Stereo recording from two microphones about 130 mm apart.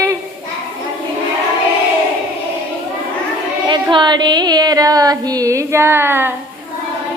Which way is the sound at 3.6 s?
35° right (ahead or behind).